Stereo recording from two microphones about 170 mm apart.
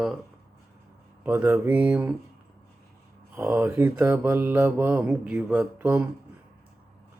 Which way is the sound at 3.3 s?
15° right (ahead or behind).